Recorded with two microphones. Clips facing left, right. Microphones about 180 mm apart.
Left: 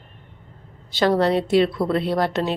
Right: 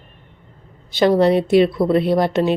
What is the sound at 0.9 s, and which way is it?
Speech, 15° right (ahead or behind).